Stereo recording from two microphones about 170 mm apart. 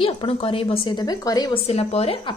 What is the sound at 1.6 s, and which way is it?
Speech, 35° left (ahead or behind).